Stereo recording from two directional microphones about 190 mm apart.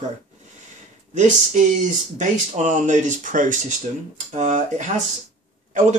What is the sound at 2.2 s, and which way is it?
Speech, 40° right (ahead or behind).